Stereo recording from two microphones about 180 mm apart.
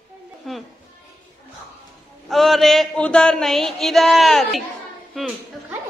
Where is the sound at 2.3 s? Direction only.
Centre (ahead or behind).